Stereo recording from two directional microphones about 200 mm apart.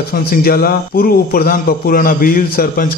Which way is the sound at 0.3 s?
50° left (ahead or behind).